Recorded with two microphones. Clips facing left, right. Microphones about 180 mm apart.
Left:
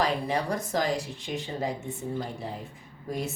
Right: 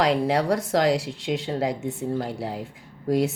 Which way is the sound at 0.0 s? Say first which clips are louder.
Right 6 dB; 75° right (ahead or behind).